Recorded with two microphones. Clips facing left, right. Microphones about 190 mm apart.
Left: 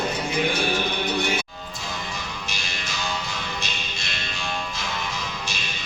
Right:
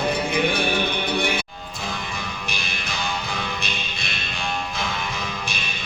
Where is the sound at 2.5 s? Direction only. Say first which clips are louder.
Right 3 dB; 55° right (ahead or behind).